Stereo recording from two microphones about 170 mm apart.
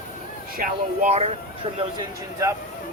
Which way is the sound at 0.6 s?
45° right (ahead or behind).